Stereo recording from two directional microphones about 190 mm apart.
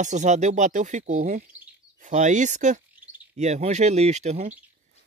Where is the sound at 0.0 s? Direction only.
40° right (ahead or behind).